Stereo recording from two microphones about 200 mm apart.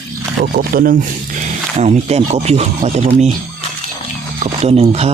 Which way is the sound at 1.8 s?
35° right (ahead or behind).